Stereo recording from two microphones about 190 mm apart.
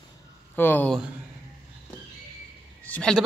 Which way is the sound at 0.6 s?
10° left (ahead or behind).